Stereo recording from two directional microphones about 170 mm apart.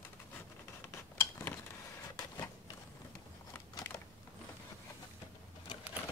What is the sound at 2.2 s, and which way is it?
Printer, 20° left (ahead or behind).